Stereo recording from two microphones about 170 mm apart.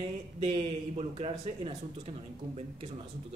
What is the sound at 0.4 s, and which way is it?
Speech, 35° right (ahead or behind).